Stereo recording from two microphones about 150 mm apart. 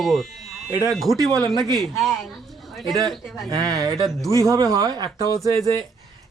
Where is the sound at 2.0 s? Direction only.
Centre (ahead or behind).